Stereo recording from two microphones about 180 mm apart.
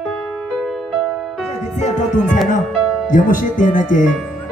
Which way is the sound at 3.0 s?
45° left (ahead or behind).